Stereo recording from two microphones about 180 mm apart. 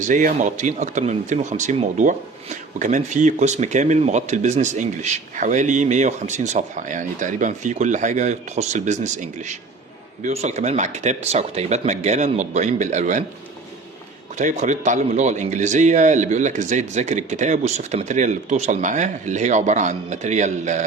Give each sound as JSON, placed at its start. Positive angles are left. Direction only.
{"t": 0.0, "sound": "speech", "side_deg": -45}
{"t": 14.3, "sound": "speech", "side_deg": -40}